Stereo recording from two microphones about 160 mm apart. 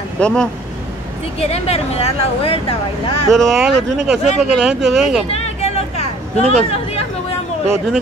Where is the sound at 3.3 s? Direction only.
Centre (ahead or behind).